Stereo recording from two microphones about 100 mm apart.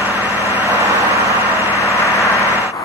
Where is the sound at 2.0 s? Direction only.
35° left (ahead or behind).